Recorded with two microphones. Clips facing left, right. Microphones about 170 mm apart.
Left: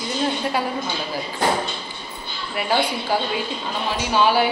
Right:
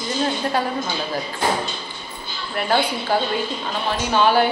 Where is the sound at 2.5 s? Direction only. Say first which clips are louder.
Right 1 dB; 10° left (ahead or behind).